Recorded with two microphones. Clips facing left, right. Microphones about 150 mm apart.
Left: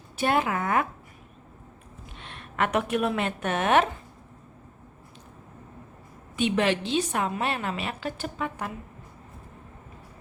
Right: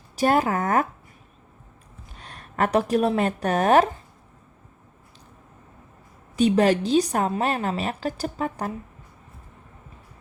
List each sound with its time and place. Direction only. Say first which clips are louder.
0.2 s a woman's voice: right 4 dB; 40° right (ahead or behind)
2.1 s a woman's voice: right 3 dB; 40° right (ahead or behind)
6.3 s a woman's voice: right 6 dB; 40° right (ahead or behind)